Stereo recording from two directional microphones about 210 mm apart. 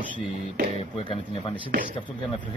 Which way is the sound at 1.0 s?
25° left (ahead or behind).